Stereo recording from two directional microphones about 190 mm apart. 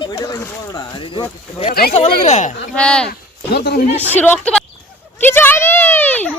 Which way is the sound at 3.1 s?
60° left (ahead or behind).